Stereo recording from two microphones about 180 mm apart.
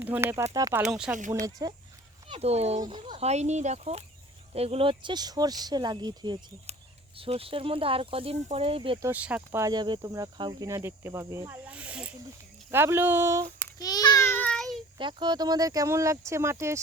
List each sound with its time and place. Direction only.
0.0 s speech: 10° right (ahead or behind)
0.9 s speech: 5° right (ahead or behind)
1.3 s speech: 20° right (ahead or behind)
2.2 s speech: 35° right (ahead or behind)
2.8 s speech: 25° right (ahead or behind)
9.0 s speech: 10° right (ahead or behind)
13.6 s child singing: 20° left (ahead or behind); by 14.8 s 5° left (ahead or behind)
14.9 s speech: 25° right (ahead or behind)